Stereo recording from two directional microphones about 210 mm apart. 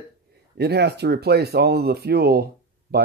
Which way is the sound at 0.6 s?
50° right (ahead or behind).